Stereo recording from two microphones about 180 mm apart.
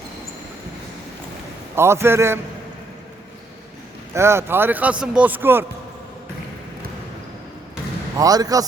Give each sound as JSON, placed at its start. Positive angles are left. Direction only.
{"t": 1.7, "sound": "speech", "side_deg": -15}
{"t": 4.1, "sound": "speech", "side_deg": -15}
{"t": 8.2, "sound": "a man's voice", "side_deg": -20}